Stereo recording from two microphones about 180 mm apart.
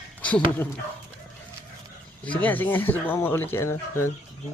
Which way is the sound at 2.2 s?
10° left (ahead or behind).